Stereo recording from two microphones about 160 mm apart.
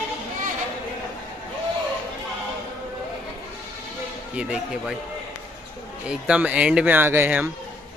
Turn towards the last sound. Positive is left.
turn(degrees=-15)  # may be behind; listen again after turning